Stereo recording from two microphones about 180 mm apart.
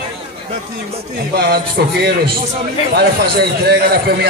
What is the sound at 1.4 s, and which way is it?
A man's voice, 60° right (ahead or behind).